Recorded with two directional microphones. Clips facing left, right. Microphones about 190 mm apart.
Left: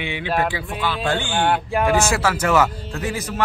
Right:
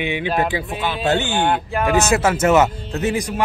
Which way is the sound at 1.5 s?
15° left (ahead or behind).